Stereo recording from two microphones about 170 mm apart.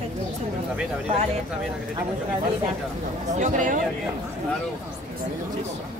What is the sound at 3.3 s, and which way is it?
Speech, 45° right (ahead or behind).